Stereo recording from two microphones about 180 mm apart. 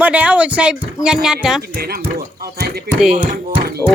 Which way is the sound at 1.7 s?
55° right (ahead or behind).